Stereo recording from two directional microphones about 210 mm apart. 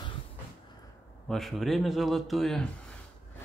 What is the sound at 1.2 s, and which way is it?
A man's voice, centre (ahead or behind).